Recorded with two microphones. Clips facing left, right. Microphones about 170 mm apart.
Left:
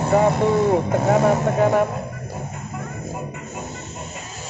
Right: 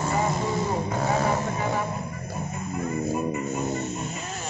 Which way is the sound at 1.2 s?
75° left (ahead or behind).